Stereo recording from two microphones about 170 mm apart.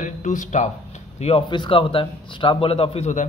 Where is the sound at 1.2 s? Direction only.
30° left (ahead or behind).